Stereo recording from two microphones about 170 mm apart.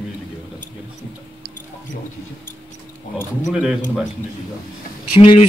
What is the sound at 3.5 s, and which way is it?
Speech, 5° right (ahead or behind).